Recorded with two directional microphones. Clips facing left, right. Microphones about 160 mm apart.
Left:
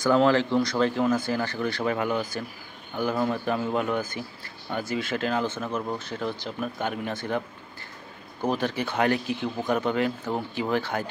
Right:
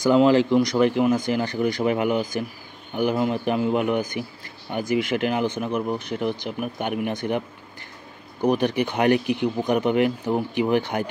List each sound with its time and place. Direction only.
0.0 s speech: 15° right (ahead or behind)